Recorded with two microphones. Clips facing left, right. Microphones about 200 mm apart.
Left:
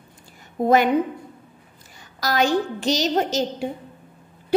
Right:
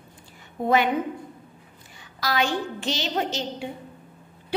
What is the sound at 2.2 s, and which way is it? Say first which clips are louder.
A woman's voice: left 5 dB; 40° left (ahead or behind).